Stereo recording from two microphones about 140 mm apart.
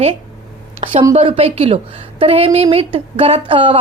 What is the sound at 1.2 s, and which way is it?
A woman's voice, 45° right (ahead or behind).